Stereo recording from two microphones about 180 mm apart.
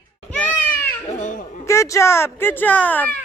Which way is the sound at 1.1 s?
40° left (ahead or behind).